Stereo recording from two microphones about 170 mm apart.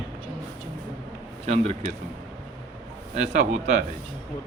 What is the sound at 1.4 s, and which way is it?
Speech, 40° right (ahead or behind).